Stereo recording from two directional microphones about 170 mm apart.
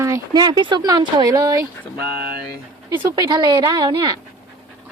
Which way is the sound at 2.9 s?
20° right (ahead or behind).